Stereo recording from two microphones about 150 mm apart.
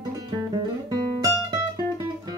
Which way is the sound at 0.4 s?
25° right (ahead or behind).